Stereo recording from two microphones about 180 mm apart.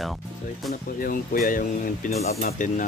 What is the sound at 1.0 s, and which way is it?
Speech, 50° left (ahead or behind).